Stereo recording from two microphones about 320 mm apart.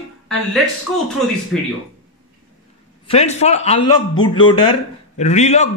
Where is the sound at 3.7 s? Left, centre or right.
Left.